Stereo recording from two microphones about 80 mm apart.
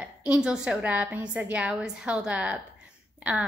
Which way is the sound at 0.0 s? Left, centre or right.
Centre.